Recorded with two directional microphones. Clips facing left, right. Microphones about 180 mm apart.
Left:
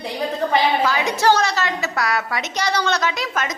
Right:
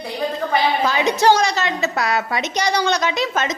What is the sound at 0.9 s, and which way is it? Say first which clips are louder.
A woman's voice: right 2 dB; 20° right (ahead or behind).